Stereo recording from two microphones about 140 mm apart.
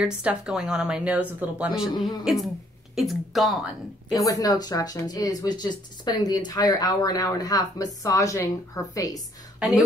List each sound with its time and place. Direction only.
0.0 s speech: 5° right (ahead or behind)
4.1 s speech: 25° left (ahead or behind)
9.6 s a woman's voice: 5° right (ahead or behind)